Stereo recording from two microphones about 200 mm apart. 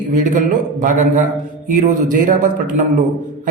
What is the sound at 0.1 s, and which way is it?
A man's voice, 40° right (ahead or behind).